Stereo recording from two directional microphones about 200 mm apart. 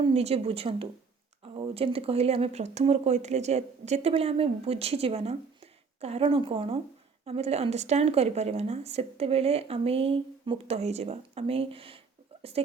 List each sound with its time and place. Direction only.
0.0 s speech: 30° right (ahead or behind)